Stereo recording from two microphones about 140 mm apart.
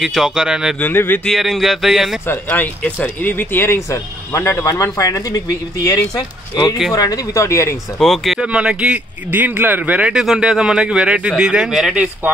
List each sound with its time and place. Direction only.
0.0 s speech: 5° right (ahead or behind)
0.7 s speech: 15° left (ahead or behind)
1.2 s speech: centre (ahead or behind)
2.2 s speech: 15° left (ahead or behind)
8.0 s speech: centre (ahead or behind)